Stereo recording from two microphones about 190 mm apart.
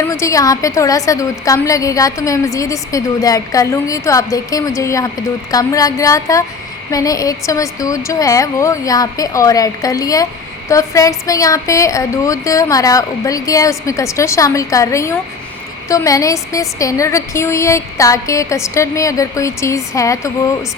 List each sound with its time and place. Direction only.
0.0 s a woman's voice: 15° left (ahead or behind)